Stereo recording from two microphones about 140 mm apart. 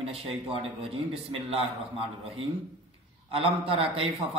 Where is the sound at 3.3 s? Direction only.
40° right (ahead or behind).